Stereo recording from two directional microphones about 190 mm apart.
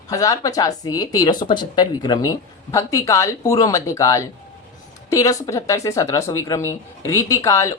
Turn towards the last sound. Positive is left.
turn(degrees=15)  # may be behind; listen again after turning